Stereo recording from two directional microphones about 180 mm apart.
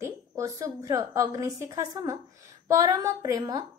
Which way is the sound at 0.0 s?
20° right (ahead or behind).